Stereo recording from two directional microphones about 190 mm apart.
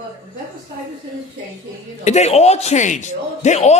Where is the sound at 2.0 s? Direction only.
35° left (ahead or behind).